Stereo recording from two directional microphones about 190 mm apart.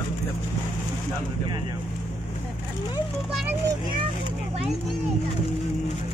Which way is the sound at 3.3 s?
Centre (ahead or behind).